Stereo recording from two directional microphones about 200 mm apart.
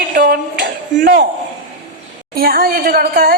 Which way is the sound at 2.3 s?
50° right (ahead or behind).